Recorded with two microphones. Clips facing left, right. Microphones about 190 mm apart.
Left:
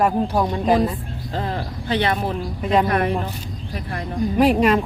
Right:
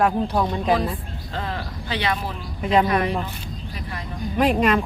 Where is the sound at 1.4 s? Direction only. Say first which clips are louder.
Left 3 dB; 35° left (ahead or behind).